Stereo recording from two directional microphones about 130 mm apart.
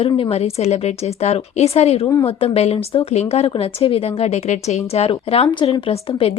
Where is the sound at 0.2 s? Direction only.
50° left (ahead or behind).